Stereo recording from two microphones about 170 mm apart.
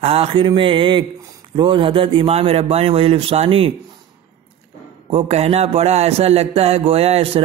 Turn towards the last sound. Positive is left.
turn(degrees=-35)  # may be behind; listen again after turning